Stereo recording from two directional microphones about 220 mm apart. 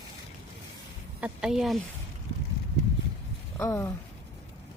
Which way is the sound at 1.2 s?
5° right (ahead or behind).